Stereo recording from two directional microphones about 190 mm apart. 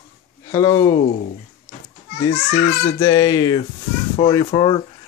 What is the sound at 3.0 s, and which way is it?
Speech, 15° left (ahead or behind).